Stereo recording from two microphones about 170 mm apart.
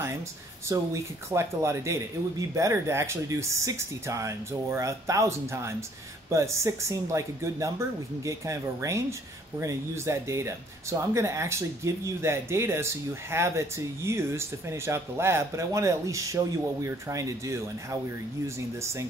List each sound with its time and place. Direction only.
0.7 s speech: 15° right (ahead or behind)